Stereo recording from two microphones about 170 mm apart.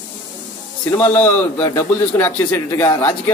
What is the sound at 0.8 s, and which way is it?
A man's voice, 10° left (ahead or behind).